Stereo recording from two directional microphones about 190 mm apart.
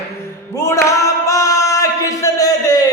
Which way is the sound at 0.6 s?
15° left (ahead or behind).